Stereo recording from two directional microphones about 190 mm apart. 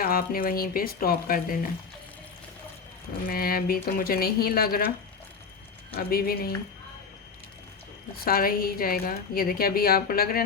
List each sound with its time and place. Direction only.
0.0 s a woman's voice: 50° left (ahead or behind)
3.2 s a woman's voice: 50° left (ahead or behind)
6.1 s a woman's voice: 50° left (ahead or behind)
8.2 s a woman's voice: 50° left (ahead or behind)